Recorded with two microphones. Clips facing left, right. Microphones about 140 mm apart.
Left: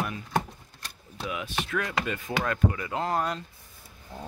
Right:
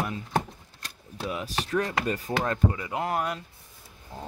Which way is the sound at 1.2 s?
35° right (ahead or behind).